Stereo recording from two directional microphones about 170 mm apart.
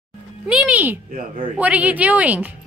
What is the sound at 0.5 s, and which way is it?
Speech, 5° right (ahead or behind).